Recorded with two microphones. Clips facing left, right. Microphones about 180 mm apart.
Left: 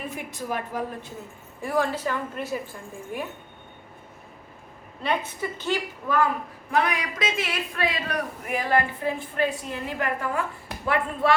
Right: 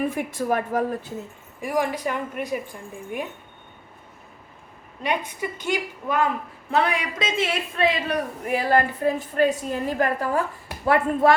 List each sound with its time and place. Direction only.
0.1 s a woman's voice: 50° right (ahead or behind)
1.6 s a woman's voice: 15° right (ahead or behind)
5.0 s a woman's voice: 15° right (ahead or behind)
6.7 s a man's voice: 30° right (ahead or behind)